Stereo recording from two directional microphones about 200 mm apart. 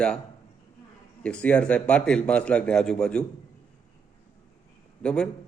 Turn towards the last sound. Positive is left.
turn(degrees=5)  # may be behind; listen again after turning